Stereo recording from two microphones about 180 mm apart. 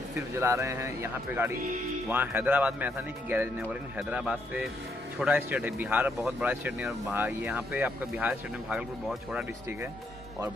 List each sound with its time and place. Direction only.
0.4 s a man's voice: 15° right (ahead or behind)